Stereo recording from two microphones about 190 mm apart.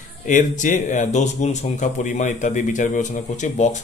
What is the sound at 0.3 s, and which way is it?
Speech, 40° left (ahead or behind).